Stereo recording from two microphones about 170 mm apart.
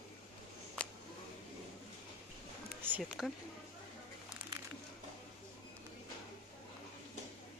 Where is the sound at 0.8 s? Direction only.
5° left (ahead or behind).